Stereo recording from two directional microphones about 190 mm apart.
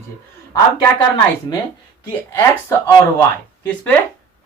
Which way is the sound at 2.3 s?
15° left (ahead or behind).